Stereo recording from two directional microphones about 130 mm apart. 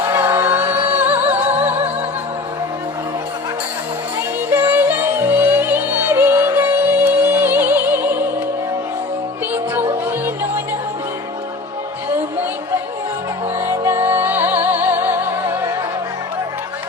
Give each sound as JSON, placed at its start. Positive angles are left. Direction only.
{"t": 0.1, "sound": "music", "side_deg": -15}
{"t": 1.4, "sound": "music", "side_deg": -60}
{"t": 4.5, "sound": "music", "side_deg": -15}
{"t": 9.9, "sound": "music", "side_deg": -20}
{"t": 13.6, "sound": "music", "side_deg": -20}